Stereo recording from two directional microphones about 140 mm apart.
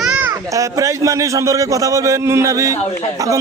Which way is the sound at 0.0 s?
10° right (ahead or behind).